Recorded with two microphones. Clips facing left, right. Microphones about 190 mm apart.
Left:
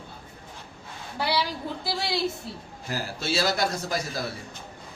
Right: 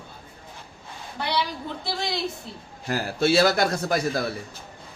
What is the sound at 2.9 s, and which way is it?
Speech, 60° right (ahead or behind).